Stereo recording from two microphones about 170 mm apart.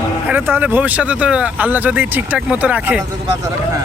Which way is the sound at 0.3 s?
10° right (ahead or behind).